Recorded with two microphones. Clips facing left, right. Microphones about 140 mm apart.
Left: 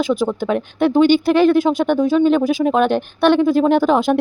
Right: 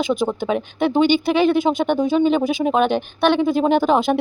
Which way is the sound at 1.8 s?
15° right (ahead or behind).